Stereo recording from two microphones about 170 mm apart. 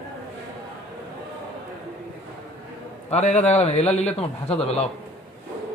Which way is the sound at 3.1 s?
40° left (ahead or behind).